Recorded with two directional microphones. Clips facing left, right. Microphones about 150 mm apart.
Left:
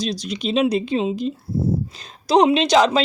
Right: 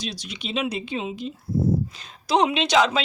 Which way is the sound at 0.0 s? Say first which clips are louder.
Left 9 dB; 35° left (ahead or behind).